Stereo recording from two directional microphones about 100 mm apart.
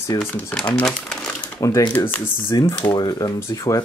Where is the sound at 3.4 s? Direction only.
30° left (ahead or behind).